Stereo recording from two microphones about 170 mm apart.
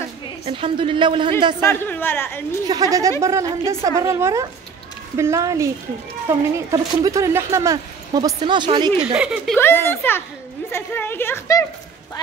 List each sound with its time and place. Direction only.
0.5 s speech: 30° right (ahead or behind)
1.6 s a woman's voice: 15° left (ahead or behind)
2.7 s speech: 20° right (ahead or behind)
9.0 s speech: 5° right (ahead or behind)
9.6 s a woman's voice: 15° left (ahead or behind)